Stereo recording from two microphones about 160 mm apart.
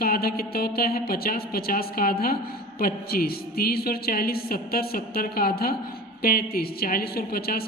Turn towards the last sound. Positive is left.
turn(degrees=70)  # may be behind; listen again after turning